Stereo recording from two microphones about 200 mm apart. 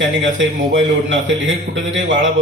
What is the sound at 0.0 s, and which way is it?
A man's voice, 70° right (ahead or behind).